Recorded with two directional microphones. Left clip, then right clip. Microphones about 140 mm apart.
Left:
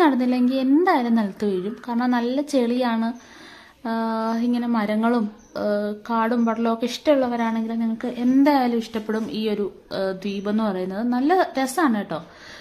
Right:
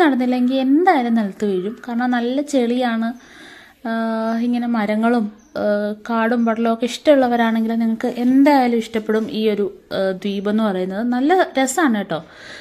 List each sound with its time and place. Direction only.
0.0 s speech: 15° right (ahead or behind); by 8.1 s 35° right (ahead or behind)
8.5 s a woman's voice: 20° right (ahead or behind)